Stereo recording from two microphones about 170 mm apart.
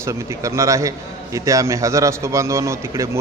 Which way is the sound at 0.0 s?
15° right (ahead or behind).